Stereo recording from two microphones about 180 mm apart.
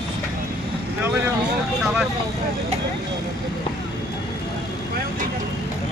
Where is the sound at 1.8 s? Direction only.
Centre (ahead or behind).